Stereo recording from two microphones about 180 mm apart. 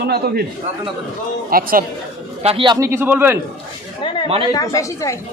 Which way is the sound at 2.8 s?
10° right (ahead or behind).